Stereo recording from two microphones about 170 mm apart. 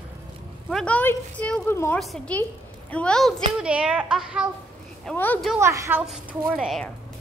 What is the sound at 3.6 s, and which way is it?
Speech, 5° right (ahead or behind).